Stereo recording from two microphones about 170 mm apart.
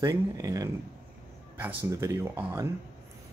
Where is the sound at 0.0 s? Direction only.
20° right (ahead or behind).